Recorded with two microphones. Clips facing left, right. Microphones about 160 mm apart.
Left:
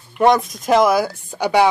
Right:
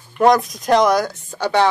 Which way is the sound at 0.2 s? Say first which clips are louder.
Right 1 dB; centre (ahead or behind).